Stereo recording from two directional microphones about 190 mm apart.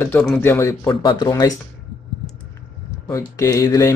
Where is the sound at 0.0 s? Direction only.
5° left (ahead or behind).